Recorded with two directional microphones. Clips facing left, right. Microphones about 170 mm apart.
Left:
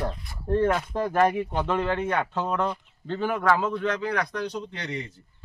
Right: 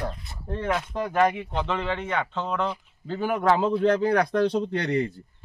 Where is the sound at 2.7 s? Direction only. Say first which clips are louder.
Even; 10° right (ahead or behind); by 4.4 s 45° right (ahead or behind).